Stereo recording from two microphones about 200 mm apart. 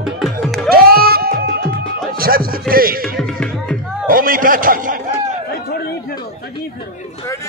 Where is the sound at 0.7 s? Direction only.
50° right (ahead or behind).